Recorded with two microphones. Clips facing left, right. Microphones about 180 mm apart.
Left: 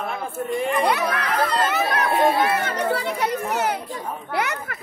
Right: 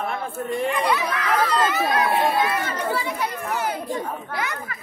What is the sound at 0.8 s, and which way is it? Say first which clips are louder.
Speech: left 2 dB; 55° left (ahead or behind).